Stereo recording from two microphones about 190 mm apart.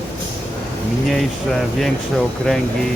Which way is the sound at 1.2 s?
Centre (ahead or behind).